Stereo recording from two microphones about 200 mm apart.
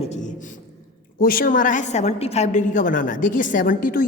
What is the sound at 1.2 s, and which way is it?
A woman's voice, 45° left (ahead or behind).